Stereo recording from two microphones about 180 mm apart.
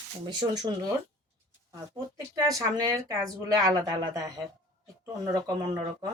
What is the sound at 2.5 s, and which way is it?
Speech, 20° right (ahead or behind).